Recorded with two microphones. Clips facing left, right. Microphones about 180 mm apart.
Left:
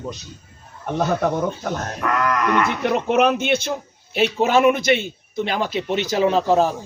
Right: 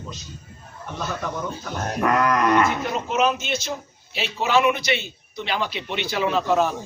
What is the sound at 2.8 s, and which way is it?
A man's voice, 65° left (ahead or behind).